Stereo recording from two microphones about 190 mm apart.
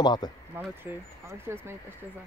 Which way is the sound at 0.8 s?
10° right (ahead or behind).